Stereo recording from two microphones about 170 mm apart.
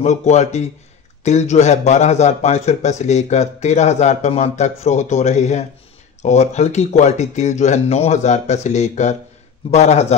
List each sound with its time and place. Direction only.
0.0 s a man's voice: 40° left (ahead or behind)